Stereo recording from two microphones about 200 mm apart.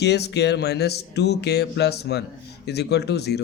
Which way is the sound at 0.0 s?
55° left (ahead or behind).